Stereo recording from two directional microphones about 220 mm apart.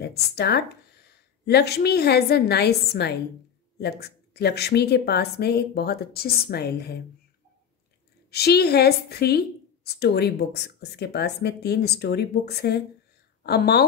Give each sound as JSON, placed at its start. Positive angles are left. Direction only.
{"t": 0.0, "sound": "a woman's voice", "side_deg": 45}
{"t": 8.3, "sound": "a woman's voice", "side_deg": 45}